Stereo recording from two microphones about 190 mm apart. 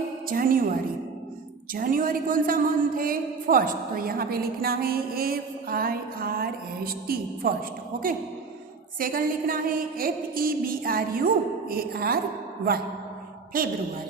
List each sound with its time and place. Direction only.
0.3 s a woman's voice: 50° right (ahead or behind)
1.7 s a woman's voice: 45° right (ahead or behind)
13.5 s a woman's voice: 45° right (ahead or behind)